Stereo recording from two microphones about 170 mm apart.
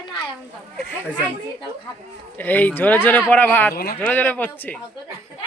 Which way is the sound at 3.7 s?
60° left (ahead or behind).